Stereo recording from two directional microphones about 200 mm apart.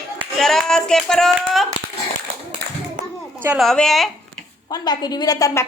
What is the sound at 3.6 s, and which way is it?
Speech, centre (ahead or behind).